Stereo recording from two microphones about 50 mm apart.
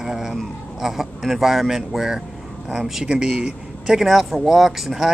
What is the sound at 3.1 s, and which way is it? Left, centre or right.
Speech, centre.